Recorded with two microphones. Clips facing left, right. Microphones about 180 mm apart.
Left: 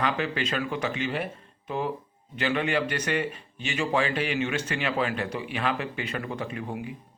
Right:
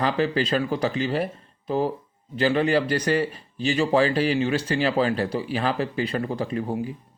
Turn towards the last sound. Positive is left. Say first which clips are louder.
# right 6 dB
turn(degrees=-35)  # may be behind; listen again after turning